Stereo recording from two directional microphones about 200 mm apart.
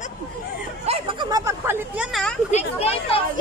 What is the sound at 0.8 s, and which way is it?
Chatter, 30° right (ahead or behind).